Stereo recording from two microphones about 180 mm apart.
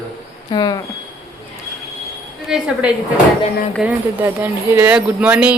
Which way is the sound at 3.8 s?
10° right (ahead or behind).